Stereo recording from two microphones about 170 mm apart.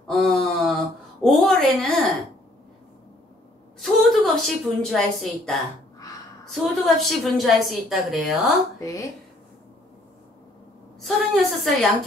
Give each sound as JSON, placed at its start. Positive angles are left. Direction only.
{"t": 0.0, "sound": "a sound", "side_deg": 0}
{"t": 3.8, "sound": "a woman's voice", "side_deg": 0}
{"t": 8.7, "sound": "a woman's voice", "side_deg": 20}
{"t": 11.0, "sound": "a woman's voice", "side_deg": 0}